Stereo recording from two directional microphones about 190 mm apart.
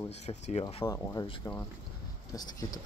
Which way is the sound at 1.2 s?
25° left (ahead or behind).